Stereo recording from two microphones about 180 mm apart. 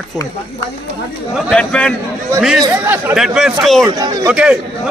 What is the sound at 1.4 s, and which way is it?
Speech, 5° left (ahead or behind).